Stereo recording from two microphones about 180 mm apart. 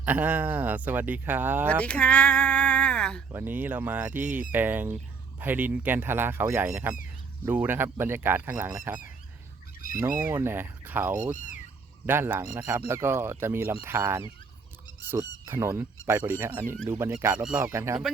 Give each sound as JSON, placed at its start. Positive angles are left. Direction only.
{"t": 0.0, "sound": "speech", "side_deg": -10}
{"t": 1.8, "sound": "speech", "side_deg": 5}
{"t": 3.3, "sound": "speech", "side_deg": -10}
{"t": 10.2, "sound": "speech", "side_deg": -15}
{"t": 11.1, "sound": "speech", "side_deg": -40}
{"t": 12.0, "sound": "speech", "side_deg": -10}
{"t": 15.4, "sound": "speech", "side_deg": -15}